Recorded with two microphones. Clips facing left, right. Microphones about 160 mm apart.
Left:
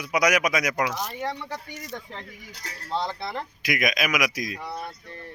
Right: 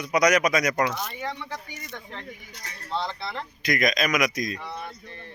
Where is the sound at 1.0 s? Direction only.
40° left (ahead or behind).